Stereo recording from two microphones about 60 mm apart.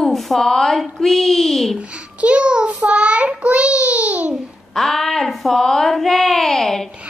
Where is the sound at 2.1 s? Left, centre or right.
Right.